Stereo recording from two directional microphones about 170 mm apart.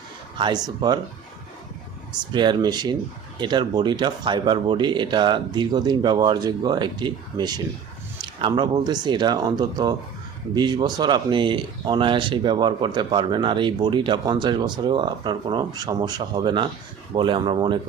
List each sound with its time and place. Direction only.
0.3 s speech: 25° right (ahead or behind)
2.3 s speech: 25° right (ahead or behind)